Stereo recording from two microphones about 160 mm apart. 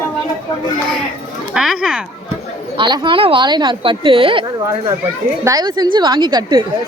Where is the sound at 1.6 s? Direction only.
Centre (ahead or behind).